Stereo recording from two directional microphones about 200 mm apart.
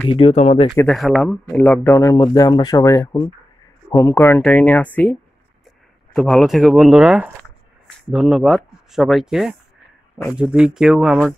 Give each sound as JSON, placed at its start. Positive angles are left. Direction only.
{"t": 0.1, "sound": "speech", "side_deg": 30}
{"t": 0.8, "sound": "speech", "side_deg": 0}
{"t": 6.1, "sound": "speech", "side_deg": 0}